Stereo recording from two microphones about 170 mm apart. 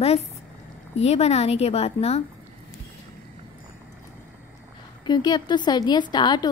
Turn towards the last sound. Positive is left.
turn(degrees=25)  # may be behind; listen again after turning